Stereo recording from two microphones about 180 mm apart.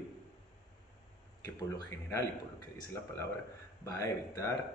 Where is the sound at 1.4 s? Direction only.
20° left (ahead or behind).